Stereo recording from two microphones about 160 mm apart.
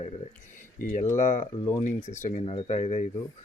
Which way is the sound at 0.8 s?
55° left (ahead or behind).